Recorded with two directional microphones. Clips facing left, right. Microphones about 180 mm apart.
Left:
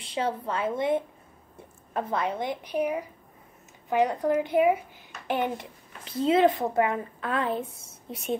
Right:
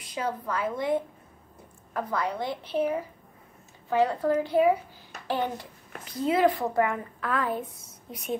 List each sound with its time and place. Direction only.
0.0 s a woman's voice: 30° left (ahead or behind)